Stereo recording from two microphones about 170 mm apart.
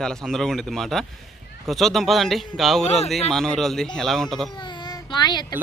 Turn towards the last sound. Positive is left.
turn(degrees=25)  # may be behind; listen again after turning